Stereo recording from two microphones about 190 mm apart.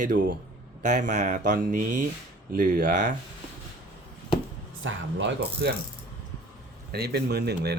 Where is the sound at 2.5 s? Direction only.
45° right (ahead or behind).